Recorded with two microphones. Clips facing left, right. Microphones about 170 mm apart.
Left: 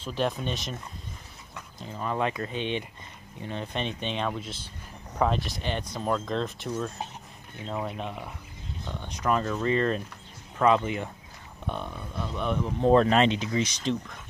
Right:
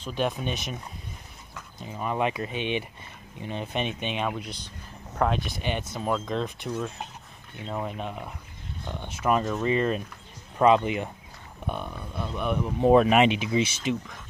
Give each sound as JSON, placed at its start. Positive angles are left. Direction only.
{"t": 0.2, "sound": "speech", "side_deg": -5}
{"t": 1.5, "sound": "a sound", "side_deg": 0}
{"t": 2.0, "sound": "speech", "side_deg": -15}
{"t": 5.1, "sound": "speech", "side_deg": 0}
{"t": 5.6, "sound": "speech", "side_deg": -15}
{"t": 8.8, "sound": "speech", "side_deg": -15}
{"t": 11.6, "sound": "speech", "side_deg": -5}